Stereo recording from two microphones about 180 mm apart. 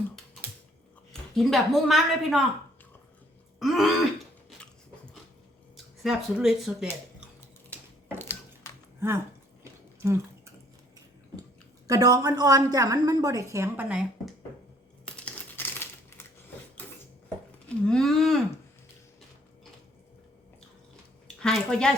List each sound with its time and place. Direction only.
1.4 s a woman's voice: centre (ahead or behind)
3.6 s throat clearing: centre (ahead or behind)
5.7 s speech: centre (ahead or behind)
8.2 s a sound: 15° left (ahead or behind)
9.0 s speech: 15° right (ahead or behind)
10.0 s drip: 15° right (ahead or behind)
11.9 s a woman's voice: 20° right (ahead or behind)
15.0 s coin: 5° left (ahead or behind)
17.8 s a woman's voice: centre (ahead or behind)
21.4 s a woman's voice: 5° left (ahead or behind)